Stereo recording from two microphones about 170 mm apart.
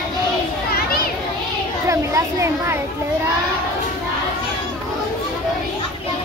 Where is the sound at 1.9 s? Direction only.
15° right (ahead or behind).